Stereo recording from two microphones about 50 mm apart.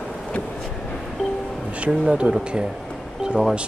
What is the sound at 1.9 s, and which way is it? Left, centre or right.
Speech, centre.